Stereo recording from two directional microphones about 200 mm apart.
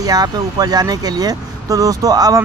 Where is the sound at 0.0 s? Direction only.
20° right (ahead or behind).